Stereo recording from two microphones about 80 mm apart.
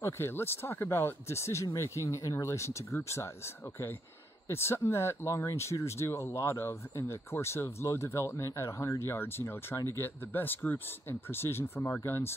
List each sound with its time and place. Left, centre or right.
0.0 s speech: left
9.1 s speech: left